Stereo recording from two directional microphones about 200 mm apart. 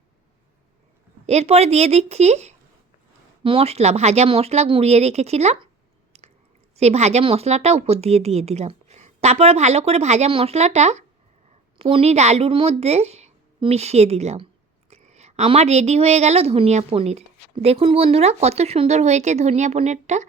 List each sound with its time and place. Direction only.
1.3 s a woman's voice: 30° right (ahead or behind)
6.1 s chewing: 30° right (ahead or behind)
6.7 s a woman's voice: 35° right (ahead or behind)